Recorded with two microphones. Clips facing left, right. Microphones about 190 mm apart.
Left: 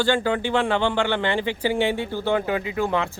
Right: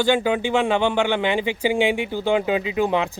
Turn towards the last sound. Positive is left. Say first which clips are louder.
# right 3 dB
turn(degrees=-20)  # may be behind; listen again after turning